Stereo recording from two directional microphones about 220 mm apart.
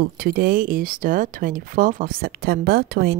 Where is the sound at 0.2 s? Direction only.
45° right (ahead or behind).